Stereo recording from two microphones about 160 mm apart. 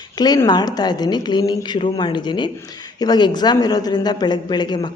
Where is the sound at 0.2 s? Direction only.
25° left (ahead or behind).